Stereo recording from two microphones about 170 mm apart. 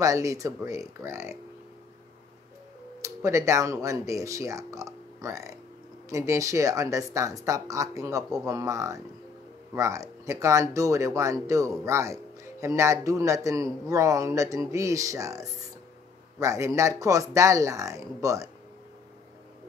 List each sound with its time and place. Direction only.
0.0 s speech: 20° right (ahead or behind)
3.0 s speech: 15° right (ahead or behind)